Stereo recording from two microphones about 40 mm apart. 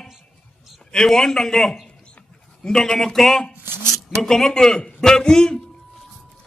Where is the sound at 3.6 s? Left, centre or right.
Right.